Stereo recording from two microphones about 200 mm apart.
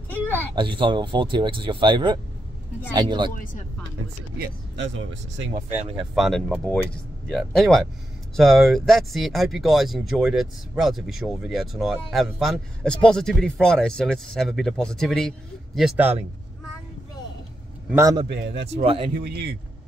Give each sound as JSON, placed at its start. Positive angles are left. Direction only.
{"t": 0.1, "sound": "a sound", "side_deg": 10}
{"t": 0.6, "sound": "speech", "side_deg": -25}
{"t": 4.4, "sound": "speech", "side_deg": -65}
{"t": 5.8, "sound": "speech", "side_deg": -25}
{"t": 6.1, "sound": "speech", "side_deg": 0}
{"t": 17.9, "sound": "a man's voice", "side_deg": -15}
{"t": 18.3, "sound": "speech", "side_deg": -60}
{"t": 18.8, "sound": "speech", "side_deg": -30}
{"t": 19.1, "sound": "a man's voice", "side_deg": -50}